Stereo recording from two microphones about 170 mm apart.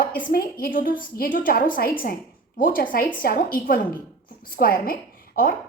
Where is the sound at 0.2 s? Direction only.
55° left (ahead or behind).